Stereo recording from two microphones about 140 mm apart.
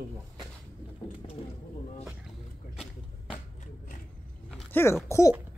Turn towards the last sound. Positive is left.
turn(degrees=20)  # may be behind; listen again after turning